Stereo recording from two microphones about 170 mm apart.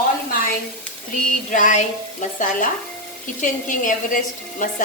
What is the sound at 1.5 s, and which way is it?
A woman's voice, 50° left (ahead or behind).